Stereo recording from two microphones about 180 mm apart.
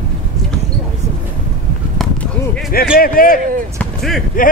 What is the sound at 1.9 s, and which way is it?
Basketball bounce, 5° left (ahead or behind).